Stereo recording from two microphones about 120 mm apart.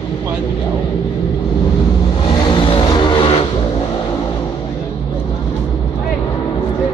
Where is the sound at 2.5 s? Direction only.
45° left (ahead or behind).